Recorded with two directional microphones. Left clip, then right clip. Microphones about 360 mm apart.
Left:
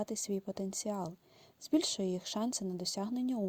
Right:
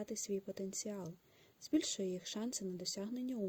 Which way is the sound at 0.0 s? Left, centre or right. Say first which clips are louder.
Left 4 dB; centre.